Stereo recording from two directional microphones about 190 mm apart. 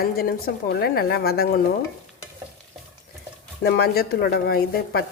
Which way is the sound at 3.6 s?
55° left (ahead or behind).